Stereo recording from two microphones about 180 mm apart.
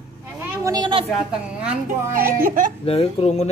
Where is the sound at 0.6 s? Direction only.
25° right (ahead or behind).